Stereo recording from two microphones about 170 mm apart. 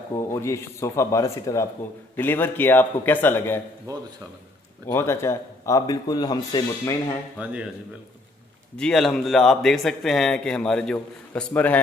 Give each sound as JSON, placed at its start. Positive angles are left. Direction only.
{"t": 0.3, "sound": "speech", "side_deg": 15}
{"t": 3.9, "sound": "speech", "side_deg": -20}
{"t": 4.8, "sound": "speech", "side_deg": 15}
{"t": 7.4, "sound": "speech", "side_deg": -10}
{"t": 8.7, "sound": "a man's voice", "side_deg": 5}